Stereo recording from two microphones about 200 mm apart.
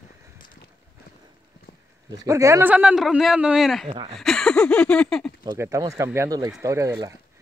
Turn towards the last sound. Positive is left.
turn(degrees=-15)  # may be behind; listen again after turning